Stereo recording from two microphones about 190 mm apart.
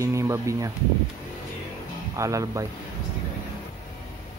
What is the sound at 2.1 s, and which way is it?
Speech, 15° right (ahead or behind).